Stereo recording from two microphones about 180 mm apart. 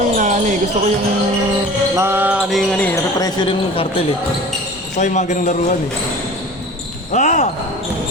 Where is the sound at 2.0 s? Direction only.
10° right (ahead or behind); by 2.9 s 5° left (ahead or behind).